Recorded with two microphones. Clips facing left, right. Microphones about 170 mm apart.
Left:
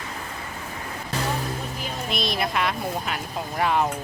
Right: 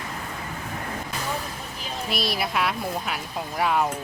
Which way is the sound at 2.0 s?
5° right (ahead or behind).